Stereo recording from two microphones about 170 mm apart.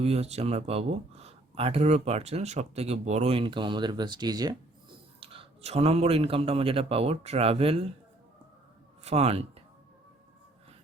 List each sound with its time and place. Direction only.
0.0 s speech: 40° right (ahead or behind)
9.0 s speech: 35° right (ahead or behind)